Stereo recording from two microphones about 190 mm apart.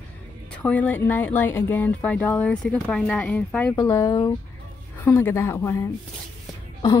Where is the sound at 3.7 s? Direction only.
20° left (ahead or behind).